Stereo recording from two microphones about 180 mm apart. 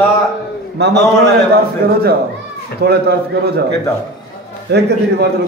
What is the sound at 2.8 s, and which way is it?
Speech, 65° right (ahead or behind).